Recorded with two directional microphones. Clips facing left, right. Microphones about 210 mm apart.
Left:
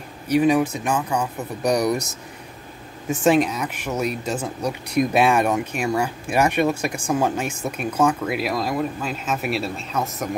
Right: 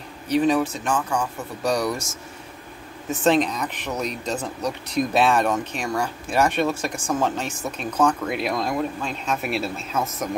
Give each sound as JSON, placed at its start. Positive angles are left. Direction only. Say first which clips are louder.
{"t": 0.3, "sound": "speech", "louder": "left 2 dB", "side_deg": 10}
{"t": 3.1, "sound": "speech", "louder": "left 2 dB", "side_deg": 10}